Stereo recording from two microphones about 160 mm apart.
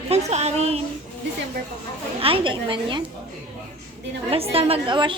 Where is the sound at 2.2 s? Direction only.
35° right (ahead or behind).